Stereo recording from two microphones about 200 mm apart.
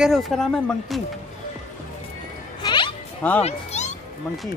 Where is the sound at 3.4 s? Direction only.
35° left (ahead or behind).